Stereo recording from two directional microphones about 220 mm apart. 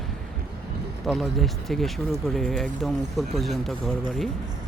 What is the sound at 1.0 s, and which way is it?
Speech, centre (ahead or behind).